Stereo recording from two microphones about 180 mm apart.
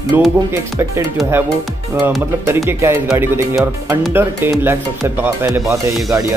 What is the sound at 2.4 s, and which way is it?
Speech, 15° right (ahead or behind).